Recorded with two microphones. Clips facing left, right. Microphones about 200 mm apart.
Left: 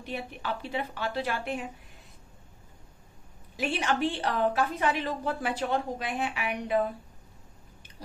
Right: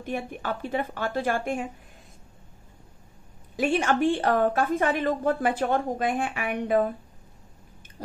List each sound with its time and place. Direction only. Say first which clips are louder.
0.0 s a woman's voice: right 5 dB; 50° right (ahead or behind)
3.5 s a woman's voice: right 6 dB; 50° right (ahead or behind)